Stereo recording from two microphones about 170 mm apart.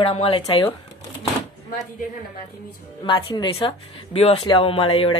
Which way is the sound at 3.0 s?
30° left (ahead or behind).